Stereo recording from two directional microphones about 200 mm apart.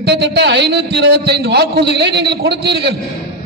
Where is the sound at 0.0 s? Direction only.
55° right (ahead or behind).